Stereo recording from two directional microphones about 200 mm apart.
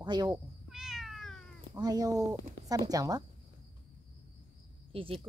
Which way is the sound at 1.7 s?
20° right (ahead or behind).